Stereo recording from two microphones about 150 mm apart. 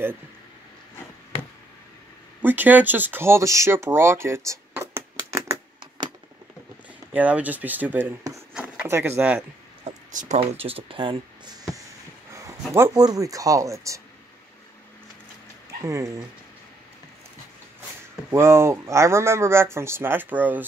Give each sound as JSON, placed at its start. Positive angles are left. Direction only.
{"t": 2.4, "sound": "speech", "side_deg": -10}
{"t": 7.1, "sound": "speech", "side_deg": -10}
{"t": 9.8, "sound": "speech", "side_deg": -50}
{"t": 12.3, "sound": "a sound", "side_deg": -20}
{"t": 12.7, "sound": "speech", "side_deg": -20}
{"t": 15.8, "sound": "speech", "side_deg": -20}
{"t": 18.3, "sound": "speech", "side_deg": -15}